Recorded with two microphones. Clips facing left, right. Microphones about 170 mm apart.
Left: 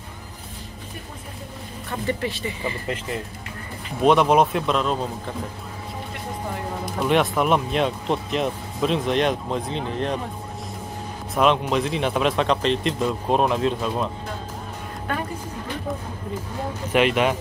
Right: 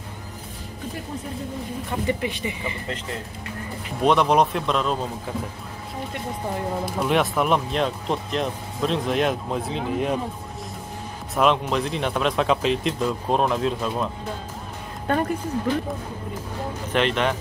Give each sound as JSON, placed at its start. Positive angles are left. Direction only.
{"t": 1.9, "sound": "speech", "side_deg": -15}
{"t": 4.0, "sound": "speech", "side_deg": 0}
{"t": 6.9, "sound": "speech", "side_deg": 0}
{"t": 11.3, "sound": "speech", "side_deg": 0}
{"t": 16.9, "sound": "speech", "side_deg": 10}